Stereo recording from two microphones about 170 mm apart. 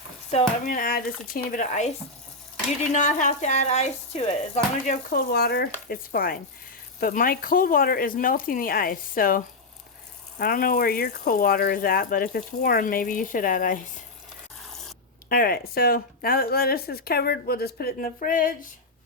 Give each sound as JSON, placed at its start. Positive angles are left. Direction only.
{"t": 0.3, "sound": "speech", "side_deg": 35}
{"t": 0.7, "sound": "speech", "side_deg": 55}
{"t": 2.9, "sound": "speech", "side_deg": 45}
{"t": 5.1, "sound": "speech", "side_deg": 65}
{"t": 15.3, "sound": "speech", "side_deg": 60}